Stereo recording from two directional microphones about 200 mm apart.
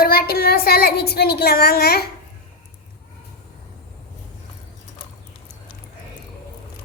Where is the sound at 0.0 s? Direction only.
50° left (ahead or behind).